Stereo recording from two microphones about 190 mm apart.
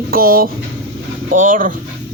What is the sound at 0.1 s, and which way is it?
Speech, 50° right (ahead or behind).